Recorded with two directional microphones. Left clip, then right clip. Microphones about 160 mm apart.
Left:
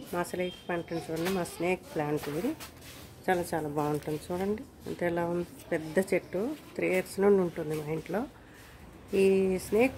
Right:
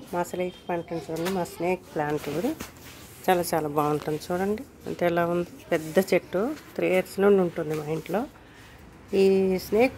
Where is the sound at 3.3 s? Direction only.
20° right (ahead or behind).